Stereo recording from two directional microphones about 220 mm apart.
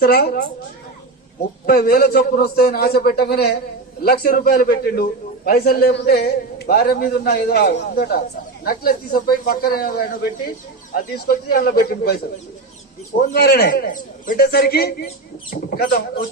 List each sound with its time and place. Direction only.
0.0 s a man's voice: 45° left (ahead or behind)
1.6 s a man's voice: 45° left (ahead or behind)
11.3 s a man's voice: 45° left (ahead or behind)
13.3 s a man's voice: 45° left (ahead or behind)